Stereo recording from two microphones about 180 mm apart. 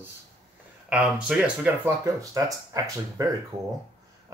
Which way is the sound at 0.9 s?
5° right (ahead or behind).